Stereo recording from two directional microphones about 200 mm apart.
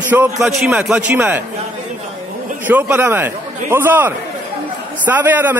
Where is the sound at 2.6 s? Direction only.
10° right (ahead or behind).